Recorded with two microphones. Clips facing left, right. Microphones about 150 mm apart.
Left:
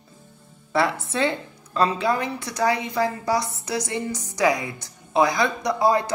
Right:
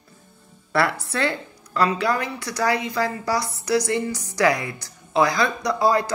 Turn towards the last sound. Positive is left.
turn(degrees=20)  # may be behind; listen again after turning